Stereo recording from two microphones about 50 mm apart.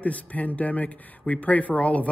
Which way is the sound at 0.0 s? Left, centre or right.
Left.